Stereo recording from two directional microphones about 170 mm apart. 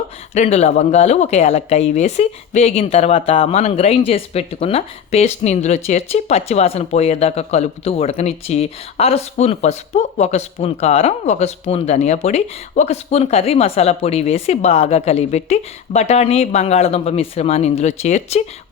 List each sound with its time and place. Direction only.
0.3 s speech: 40° left (ahead or behind)